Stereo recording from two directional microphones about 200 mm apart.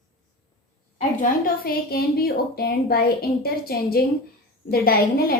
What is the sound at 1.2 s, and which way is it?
A woman's voice, 45° left (ahead or behind).